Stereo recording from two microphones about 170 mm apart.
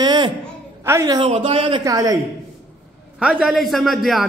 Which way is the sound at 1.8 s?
20° right (ahead or behind).